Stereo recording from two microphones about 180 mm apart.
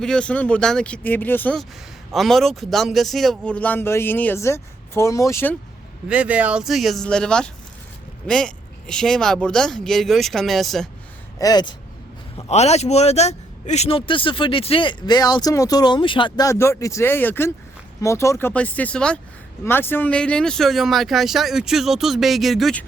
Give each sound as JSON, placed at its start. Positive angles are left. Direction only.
{"t": 0.0, "sound": "speech", "side_deg": 5}
{"t": 6.1, "sound": "speech", "side_deg": -5}
{"t": 11.3, "sound": "a man's voice", "side_deg": 20}
{"t": 12.4, "sound": "a man's voice", "side_deg": 35}